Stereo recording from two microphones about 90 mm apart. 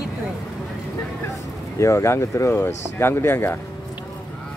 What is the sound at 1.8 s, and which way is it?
Speech, 35° left (ahead or behind).